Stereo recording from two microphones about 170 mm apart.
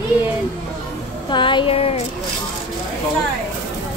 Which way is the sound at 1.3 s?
30° left (ahead or behind).